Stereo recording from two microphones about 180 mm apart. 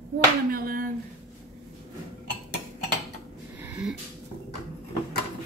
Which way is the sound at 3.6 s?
5° right (ahead or behind).